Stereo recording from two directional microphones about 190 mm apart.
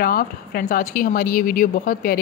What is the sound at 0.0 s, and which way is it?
A woman's voice, 50° left (ahead or behind).